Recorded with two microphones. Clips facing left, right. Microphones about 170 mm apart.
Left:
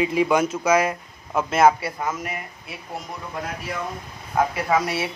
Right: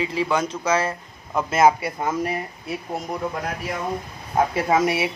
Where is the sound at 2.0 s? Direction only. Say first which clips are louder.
Right 4 dB; 35° right (ahead or behind).